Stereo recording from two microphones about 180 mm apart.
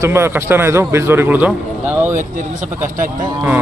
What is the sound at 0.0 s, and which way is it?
A man's voice, 15° right (ahead or behind).